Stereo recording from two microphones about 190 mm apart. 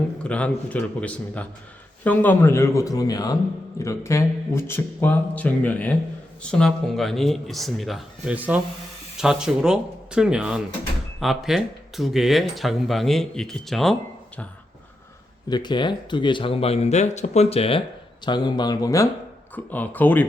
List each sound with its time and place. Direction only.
0.2 s speech: 5° left (ahead or behind)
15.4 s speech: 20° left (ahead or behind)